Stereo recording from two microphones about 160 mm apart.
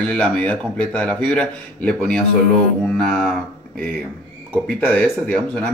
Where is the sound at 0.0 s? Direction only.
5° left (ahead or behind).